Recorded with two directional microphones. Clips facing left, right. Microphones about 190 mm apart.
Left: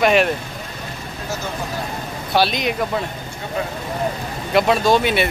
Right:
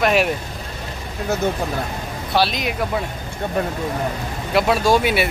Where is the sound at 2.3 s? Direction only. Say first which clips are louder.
Left 1 dB; centre (ahead or behind).